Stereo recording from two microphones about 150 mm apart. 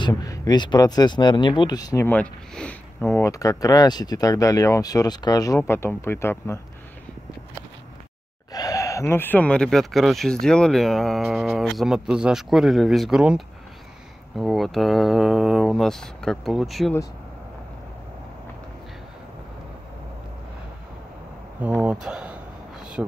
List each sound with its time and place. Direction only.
0.0 s speech: 25° left (ahead or behind)
2.0 s speech: 10° left (ahead or behind)
8.5 s speech: 25° left (ahead or behind); by 16.9 s centre (ahead or behind)
21.5 s speech: 10° right (ahead or behind)